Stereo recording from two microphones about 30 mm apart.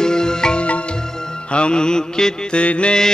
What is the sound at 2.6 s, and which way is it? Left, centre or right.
Mantra, left.